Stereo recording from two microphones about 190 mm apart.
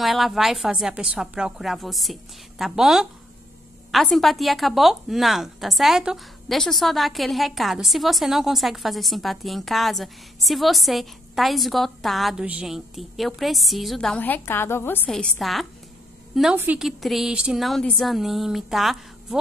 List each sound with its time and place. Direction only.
0.0 s a woman's voice: centre (ahead or behind)